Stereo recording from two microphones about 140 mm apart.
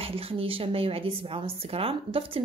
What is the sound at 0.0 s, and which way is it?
A woman's voice, 45° right (ahead or behind).